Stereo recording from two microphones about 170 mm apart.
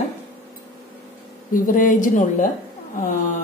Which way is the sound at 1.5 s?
50° left (ahead or behind).